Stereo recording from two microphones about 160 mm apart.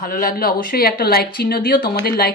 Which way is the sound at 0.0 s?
60° left (ahead or behind).